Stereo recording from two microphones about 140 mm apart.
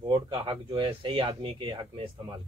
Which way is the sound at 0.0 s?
35° right (ahead or behind).